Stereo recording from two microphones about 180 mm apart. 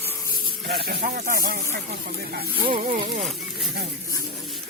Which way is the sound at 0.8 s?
55° right (ahead or behind).